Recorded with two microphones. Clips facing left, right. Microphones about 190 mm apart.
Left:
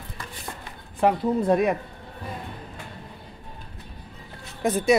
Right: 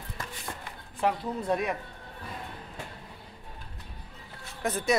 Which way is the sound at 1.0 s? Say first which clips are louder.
Left 8 dB; 55° left (ahead or behind).